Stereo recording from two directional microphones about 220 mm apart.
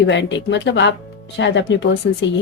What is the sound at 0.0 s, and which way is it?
Speech, 55° left (ahead or behind).